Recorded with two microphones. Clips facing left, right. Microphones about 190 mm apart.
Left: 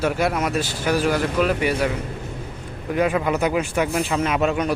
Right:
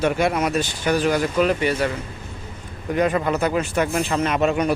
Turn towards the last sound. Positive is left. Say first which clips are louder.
# right 1 dB
turn(degrees=0)  # may be behind; listen again after turning